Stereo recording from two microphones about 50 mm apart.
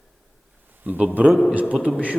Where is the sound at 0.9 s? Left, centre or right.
Right.